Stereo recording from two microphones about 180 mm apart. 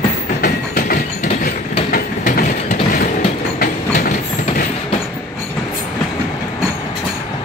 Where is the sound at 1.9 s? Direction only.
55° left (ahead or behind).